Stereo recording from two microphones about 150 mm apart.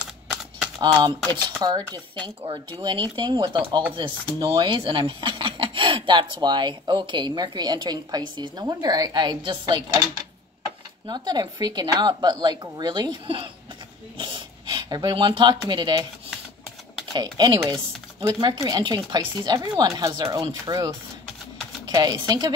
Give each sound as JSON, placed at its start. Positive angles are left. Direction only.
{"t": 0.0, "sound": "typewriter", "side_deg": -10}
{"t": 0.7, "sound": "a woman's voice", "side_deg": -30}
{"t": 11.1, "sound": "a woman's voice", "side_deg": -30}
{"t": 17.1, "sound": "a woman's voice", "side_deg": -30}